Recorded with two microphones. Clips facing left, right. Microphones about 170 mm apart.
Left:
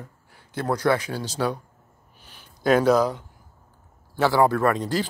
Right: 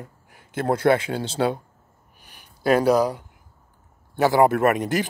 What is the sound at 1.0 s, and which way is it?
Speech, 25° right (ahead or behind).